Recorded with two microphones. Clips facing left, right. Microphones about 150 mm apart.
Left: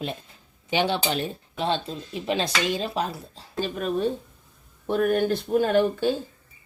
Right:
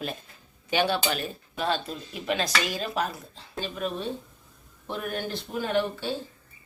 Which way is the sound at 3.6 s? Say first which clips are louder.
Left 6 dB; 45° left (ahead or behind).